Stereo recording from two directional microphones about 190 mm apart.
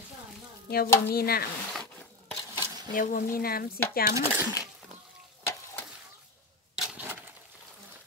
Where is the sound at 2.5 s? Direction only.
15° right (ahead or behind).